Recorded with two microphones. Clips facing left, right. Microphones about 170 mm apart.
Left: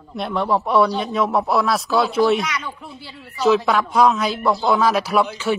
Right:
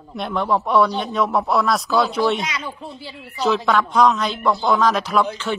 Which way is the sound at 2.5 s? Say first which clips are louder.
Even; 25° right (ahead or behind).